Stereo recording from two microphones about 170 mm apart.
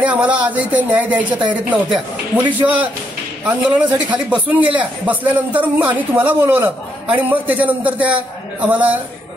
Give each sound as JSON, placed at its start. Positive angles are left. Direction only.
{"t": 0.0, "sound": "speech", "side_deg": -10}